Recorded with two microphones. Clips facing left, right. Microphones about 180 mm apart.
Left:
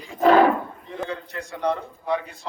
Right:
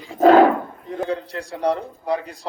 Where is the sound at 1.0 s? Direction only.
35° right (ahead or behind).